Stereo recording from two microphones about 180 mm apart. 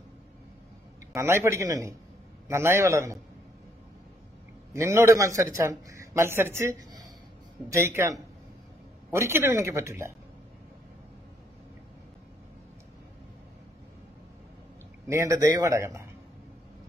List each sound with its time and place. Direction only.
1.1 s a man's voice: 15° right (ahead or behind)
4.7 s a man's voice: 15° right (ahead or behind)
15.0 s a man's voice: 15° right (ahead or behind)